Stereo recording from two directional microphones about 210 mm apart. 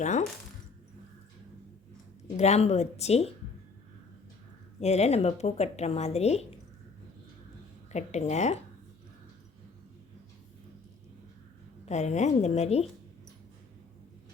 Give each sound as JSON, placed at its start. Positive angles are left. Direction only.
{"t": 0.0, "sound": "speech", "side_deg": 35}
{"t": 2.3, "sound": "a woman's voice", "side_deg": 30}
{"t": 4.8, "sound": "a woman's voice", "side_deg": 30}
{"t": 7.9, "sound": "a woman's voice", "side_deg": 30}
{"t": 11.9, "sound": "a woman's voice", "side_deg": 30}